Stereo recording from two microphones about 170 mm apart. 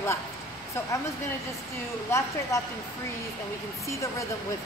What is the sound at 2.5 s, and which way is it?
Speech, 15° left (ahead or behind).